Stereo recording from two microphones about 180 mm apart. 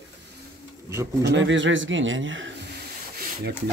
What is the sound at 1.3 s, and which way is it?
Speech, 90° right.